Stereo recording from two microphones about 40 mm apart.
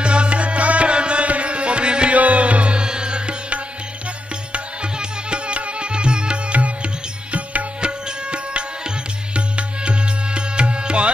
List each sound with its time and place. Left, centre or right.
0.0 s tabla: right
2.1 s music: right